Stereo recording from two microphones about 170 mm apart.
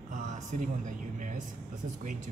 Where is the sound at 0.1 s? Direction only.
45° right (ahead or behind).